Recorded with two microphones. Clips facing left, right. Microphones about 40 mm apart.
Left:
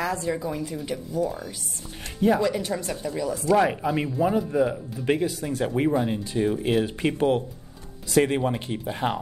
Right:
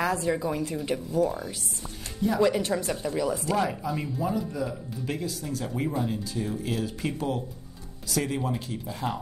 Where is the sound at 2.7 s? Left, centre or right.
Centre.